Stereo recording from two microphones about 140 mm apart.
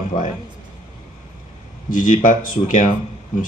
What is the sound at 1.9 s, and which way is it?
Speech, 70° left (ahead or behind).